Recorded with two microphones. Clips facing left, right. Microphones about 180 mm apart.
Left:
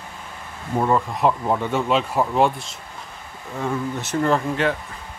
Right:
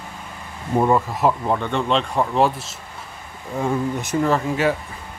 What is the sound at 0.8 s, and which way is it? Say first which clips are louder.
Speech: right 2 dB; 10° right (ahead or behind).